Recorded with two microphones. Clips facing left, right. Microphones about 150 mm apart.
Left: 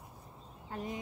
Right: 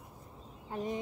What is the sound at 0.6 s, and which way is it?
Speech, 20° right (ahead or behind).